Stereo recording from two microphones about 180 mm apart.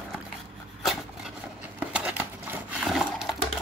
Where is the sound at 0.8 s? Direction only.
Centre (ahead or behind).